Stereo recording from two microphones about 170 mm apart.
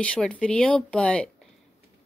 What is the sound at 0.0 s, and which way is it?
Speech, 5° left (ahead or behind).